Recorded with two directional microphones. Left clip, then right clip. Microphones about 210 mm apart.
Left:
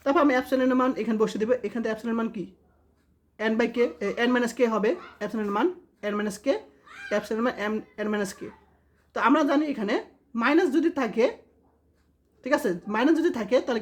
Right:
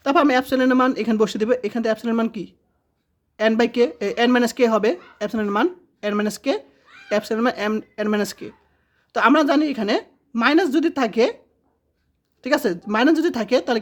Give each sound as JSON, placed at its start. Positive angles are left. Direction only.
{"t": 0.0, "sound": "speech", "side_deg": -40}
{"t": 12.4, "sound": "speech", "side_deg": -40}